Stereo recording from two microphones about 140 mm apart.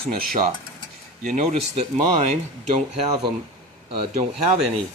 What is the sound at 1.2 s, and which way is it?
Speech, 55° right (ahead or behind).